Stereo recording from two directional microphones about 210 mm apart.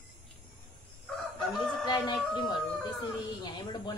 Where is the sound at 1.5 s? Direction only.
20° left (ahead or behind).